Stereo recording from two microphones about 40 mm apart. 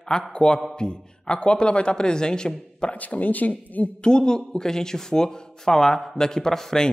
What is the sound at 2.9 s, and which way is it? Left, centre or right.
Speech, left.